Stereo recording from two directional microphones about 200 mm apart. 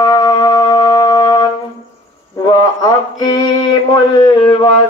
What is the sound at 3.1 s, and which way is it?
Mantra, 20° left (ahead or behind).